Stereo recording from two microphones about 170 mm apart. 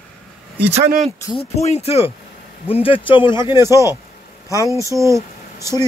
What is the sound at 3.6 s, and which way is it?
Speech, 15° right (ahead or behind).